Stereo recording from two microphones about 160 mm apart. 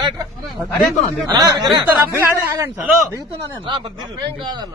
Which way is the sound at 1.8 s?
10° right (ahead or behind).